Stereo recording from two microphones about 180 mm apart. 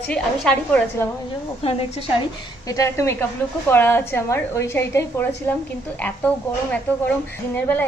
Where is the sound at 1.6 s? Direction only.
30° left (ahead or behind).